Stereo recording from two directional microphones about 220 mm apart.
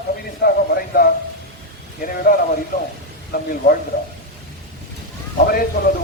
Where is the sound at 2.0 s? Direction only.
40° left (ahead or behind).